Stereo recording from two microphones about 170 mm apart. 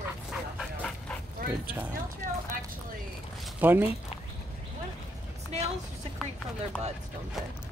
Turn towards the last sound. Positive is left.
turn(degrees=5)  # may be behind; listen again after turning